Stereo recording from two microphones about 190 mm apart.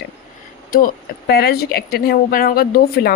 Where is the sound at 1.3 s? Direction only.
55° left (ahead or behind).